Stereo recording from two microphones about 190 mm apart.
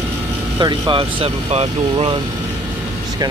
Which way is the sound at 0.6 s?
25° right (ahead or behind).